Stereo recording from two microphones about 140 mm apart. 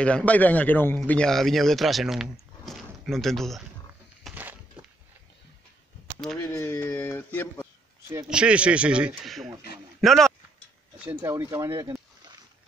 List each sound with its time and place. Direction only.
0.0 s a man's voice: 10° left (ahead or behind)
4.4 s a sound: 15° right (ahead or behind)
6.4 s speech: 15° left (ahead or behind)
8.3 s a man's voice: 5° right (ahead or behind)
11.1 s speech: 20° right (ahead or behind)